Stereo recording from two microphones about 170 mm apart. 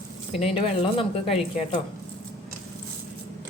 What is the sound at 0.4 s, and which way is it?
Speech, 35° left (ahead or behind).